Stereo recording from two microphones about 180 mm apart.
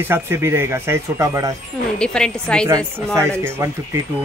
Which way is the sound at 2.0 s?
5° left (ahead or behind).